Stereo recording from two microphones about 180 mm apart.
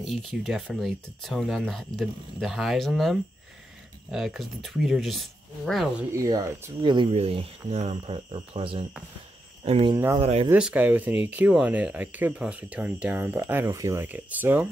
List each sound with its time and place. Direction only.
0.0 s speech: centre (ahead or behind)
6.1 s speech: 20° right (ahead or behind)
9.9 s speech: 15° right (ahead or behind)
10.2 s speech: 35° right (ahead or behind)
10.5 s speech: 10° right (ahead or behind)